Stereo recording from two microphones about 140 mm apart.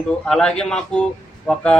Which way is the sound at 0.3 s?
5° left (ahead or behind).